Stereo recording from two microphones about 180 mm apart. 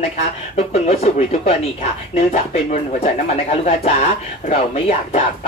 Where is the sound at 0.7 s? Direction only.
35° left (ahead or behind).